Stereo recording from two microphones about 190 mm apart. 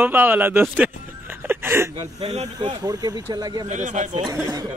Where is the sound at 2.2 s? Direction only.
35° right (ahead or behind).